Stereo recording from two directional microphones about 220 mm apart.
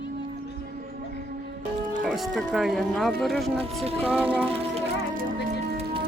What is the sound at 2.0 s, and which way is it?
Speech, centre (ahead or behind).